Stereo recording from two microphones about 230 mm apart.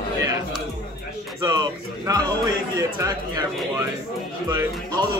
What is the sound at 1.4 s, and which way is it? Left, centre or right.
Speech, centre.